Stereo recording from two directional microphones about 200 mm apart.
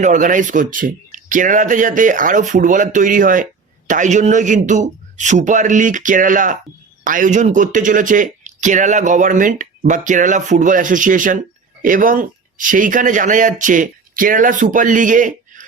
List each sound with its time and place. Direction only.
0.0 s speech: 40° right (ahead or behind)